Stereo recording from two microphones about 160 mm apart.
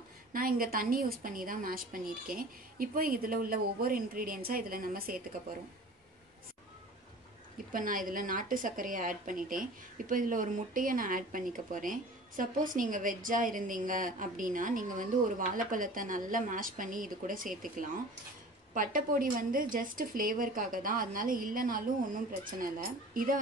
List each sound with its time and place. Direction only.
0.3 s speech: 60° right (ahead or behind)
7.7 s speech: 60° right (ahead or behind)